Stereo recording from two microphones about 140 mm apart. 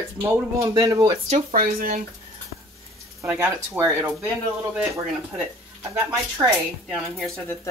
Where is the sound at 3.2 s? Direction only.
20° right (ahead or behind).